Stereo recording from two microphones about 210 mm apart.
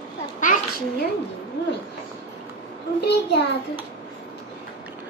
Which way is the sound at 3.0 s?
50° left (ahead or behind).